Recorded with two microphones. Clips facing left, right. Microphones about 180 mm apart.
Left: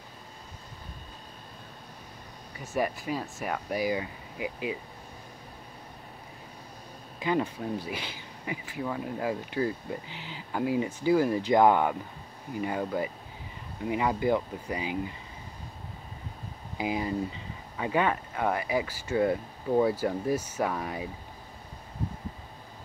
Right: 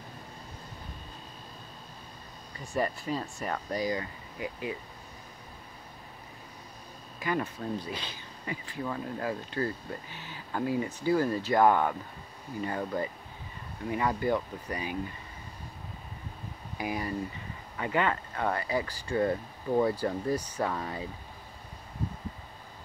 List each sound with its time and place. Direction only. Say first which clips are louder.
2.5 s speech: left 1 dB; 5° left (ahead or behind)
7.2 s speech: left 3 dB; 20° left (ahead or behind)
16.7 s speech: left 3 dB; 20° left (ahead or behind)